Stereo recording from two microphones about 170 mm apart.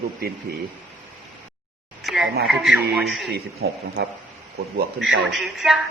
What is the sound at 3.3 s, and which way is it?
Speech, 70° right (ahead or behind).